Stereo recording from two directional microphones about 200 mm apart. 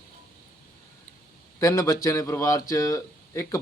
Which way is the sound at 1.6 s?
15° left (ahead or behind).